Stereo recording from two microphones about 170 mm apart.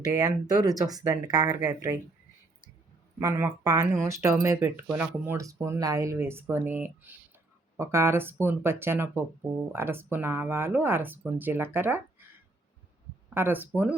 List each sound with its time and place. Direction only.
0.0 s speech: 20° right (ahead or behind)
3.2 s speech: 20° right (ahead or behind)
13.3 s speech: 10° right (ahead or behind)